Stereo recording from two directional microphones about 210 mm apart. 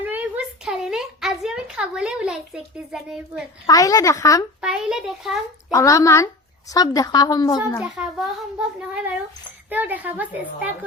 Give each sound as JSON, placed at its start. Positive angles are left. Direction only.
{"t": 0.0, "sound": "a sound", "side_deg": -5}
{"t": 2.9, "sound": "a child's voice", "side_deg": 0}
{"t": 3.7, "sound": "speech", "side_deg": 15}
{"t": 4.6, "sound": "a child's voice", "side_deg": 0}
{"t": 5.7, "sound": "speech", "side_deg": 15}
{"t": 7.8, "sound": "a child's voice", "side_deg": 0}
{"t": 9.6, "sound": "a woman's voice", "side_deg": -10}